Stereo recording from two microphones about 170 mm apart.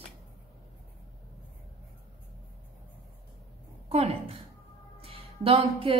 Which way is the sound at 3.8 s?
35° right (ahead or behind).